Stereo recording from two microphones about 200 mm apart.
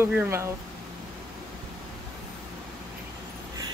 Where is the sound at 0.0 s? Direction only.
10° right (ahead or behind).